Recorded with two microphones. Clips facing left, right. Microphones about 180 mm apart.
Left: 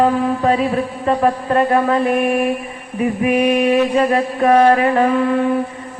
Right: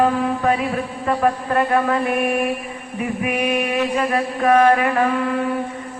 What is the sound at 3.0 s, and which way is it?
Mantra, 30° left (ahead or behind).